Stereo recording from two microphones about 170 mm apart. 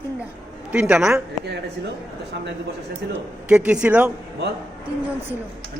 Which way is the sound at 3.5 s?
5° right (ahead or behind).